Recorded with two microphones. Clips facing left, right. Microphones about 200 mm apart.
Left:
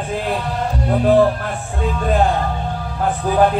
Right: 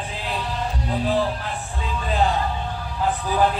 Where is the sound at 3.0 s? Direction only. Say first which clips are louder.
Left 5 dB; 50° left (ahead or behind).